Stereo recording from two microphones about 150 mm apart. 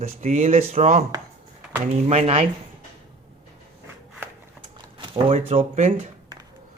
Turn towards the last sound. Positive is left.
turn(degrees=-45)  # may be behind; listen again after turning